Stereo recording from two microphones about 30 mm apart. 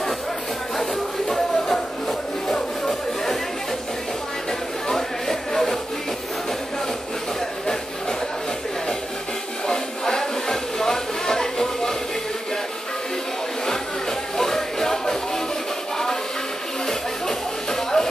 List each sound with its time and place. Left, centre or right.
0.7 s music: centre
4.5 s a sound: centre
5.3 s music: centre
9.7 s a sound: centre
14.3 s music: centre
16.8 s music: centre